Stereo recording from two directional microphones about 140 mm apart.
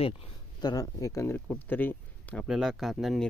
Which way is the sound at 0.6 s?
25° left (ahead or behind).